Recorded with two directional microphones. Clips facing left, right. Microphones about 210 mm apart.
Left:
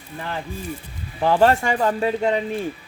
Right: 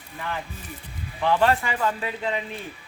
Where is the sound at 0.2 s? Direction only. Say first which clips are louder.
Left 3 dB; 30° left (ahead or behind).